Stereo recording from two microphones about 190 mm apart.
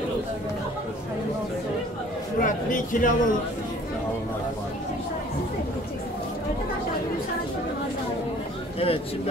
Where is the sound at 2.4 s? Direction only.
45° left (ahead or behind).